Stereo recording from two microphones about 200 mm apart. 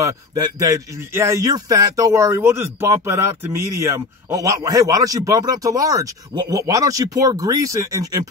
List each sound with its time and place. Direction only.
0.0 s a man's voice: 20° right (ahead or behind)